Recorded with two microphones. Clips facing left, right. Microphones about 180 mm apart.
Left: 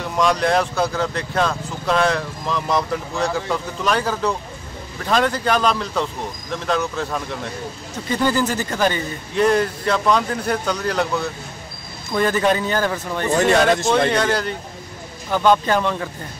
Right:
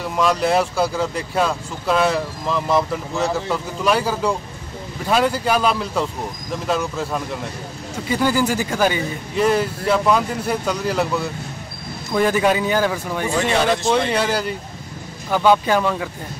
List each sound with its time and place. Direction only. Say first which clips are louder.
0.0 s a man's voice: even; 5° right (ahead or behind)
13.3 s speech: left 4 dB; 45° left (ahead or behind)
13.8 s a man's voice: left 1 dB; 5° right (ahead or behind)